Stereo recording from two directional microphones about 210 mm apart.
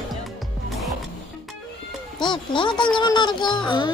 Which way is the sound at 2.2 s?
20° left (ahead or behind).